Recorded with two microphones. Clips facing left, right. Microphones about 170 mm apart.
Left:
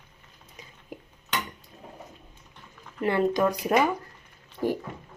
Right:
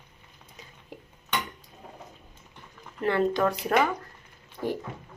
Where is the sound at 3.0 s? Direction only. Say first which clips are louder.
Left 1 dB; 15° left (ahead or behind).